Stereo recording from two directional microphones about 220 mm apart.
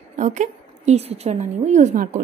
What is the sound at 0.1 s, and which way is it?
A woman's voice, 35° right (ahead or behind).